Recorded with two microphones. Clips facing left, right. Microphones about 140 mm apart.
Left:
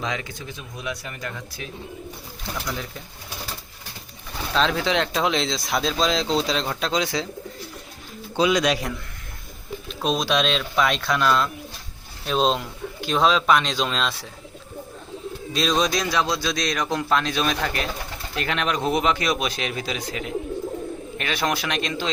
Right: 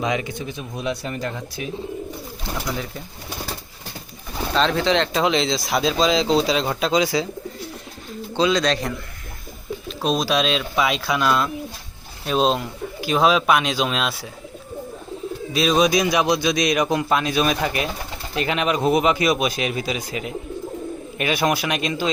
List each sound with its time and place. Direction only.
0.0 s speech: 20° right (ahead or behind)
2.6 s speech: 5° right (ahead or behind)
4.5 s speech: centre (ahead or behind)
8.4 s speech: 10° left (ahead or behind)
10.0 s a man's voice: centre (ahead or behind)
15.5 s a man's voice: 5° right (ahead or behind)